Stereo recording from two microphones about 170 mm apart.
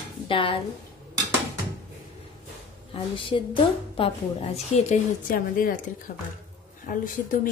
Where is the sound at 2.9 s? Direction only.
30° left (ahead or behind).